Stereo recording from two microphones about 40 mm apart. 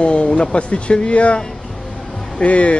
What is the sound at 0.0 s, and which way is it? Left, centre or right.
A man's voice, left.